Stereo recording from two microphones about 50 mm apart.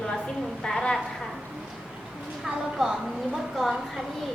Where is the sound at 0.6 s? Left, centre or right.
Centre.